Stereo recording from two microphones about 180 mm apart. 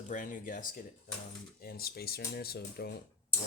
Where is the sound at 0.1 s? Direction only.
45° left (ahead or behind).